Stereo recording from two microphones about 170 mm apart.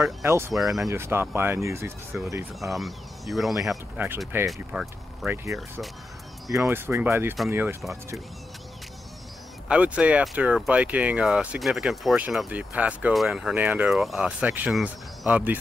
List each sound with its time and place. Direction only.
0.2 s speech: 15° right (ahead or behind)
0.6 s speech: centre (ahead or behind)
0.8 s speech: 15° right (ahead or behind)
2.6 s speech: centre (ahead or behind)
5.3 s speech: 15° right (ahead or behind)
6.7 s speech: 15° right (ahead or behind)
9.7 s speech: 5° right (ahead or behind)